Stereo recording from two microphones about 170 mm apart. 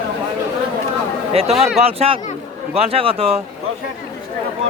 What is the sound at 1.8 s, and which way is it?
A man's voice, 35° right (ahead or behind).